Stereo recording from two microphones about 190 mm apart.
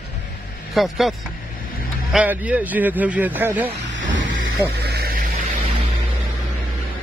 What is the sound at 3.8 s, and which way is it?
Vehicle, 70° right (ahead or behind).